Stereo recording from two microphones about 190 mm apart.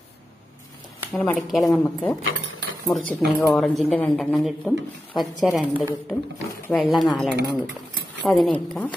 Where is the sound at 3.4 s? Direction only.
Centre (ahead or behind).